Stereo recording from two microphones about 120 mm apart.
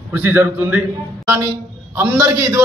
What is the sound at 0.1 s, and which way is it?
A man's voice, 15° right (ahead or behind).